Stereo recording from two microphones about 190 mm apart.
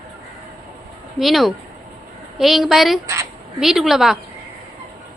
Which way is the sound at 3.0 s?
15° right (ahead or behind).